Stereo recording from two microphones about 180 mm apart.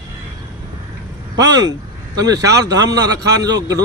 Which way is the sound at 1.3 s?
20° right (ahead or behind).